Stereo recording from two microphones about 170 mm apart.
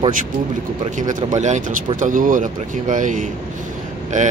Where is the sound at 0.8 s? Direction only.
45° right (ahead or behind).